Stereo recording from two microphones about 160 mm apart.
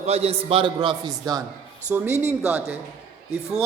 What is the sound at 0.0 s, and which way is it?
A man's voice, 40° right (ahead or behind).